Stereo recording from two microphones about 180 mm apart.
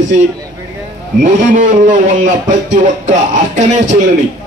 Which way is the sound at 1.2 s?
45° right (ahead or behind).